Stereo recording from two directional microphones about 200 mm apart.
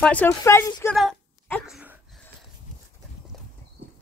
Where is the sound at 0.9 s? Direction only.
Centre (ahead or behind).